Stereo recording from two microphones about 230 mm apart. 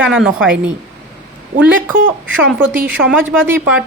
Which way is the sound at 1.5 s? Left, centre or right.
Right.